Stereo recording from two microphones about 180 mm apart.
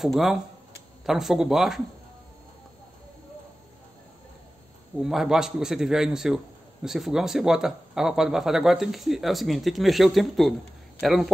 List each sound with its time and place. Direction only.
0.0 s a man's voice: centre (ahead or behind)
5.0 s a man's voice: 5° right (ahead or behind)